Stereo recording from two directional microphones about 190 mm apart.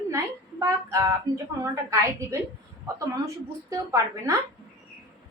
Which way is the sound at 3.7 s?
15° right (ahead or behind).